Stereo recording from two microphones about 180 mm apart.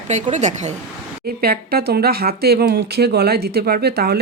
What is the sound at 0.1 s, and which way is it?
Speech, 40° right (ahead or behind).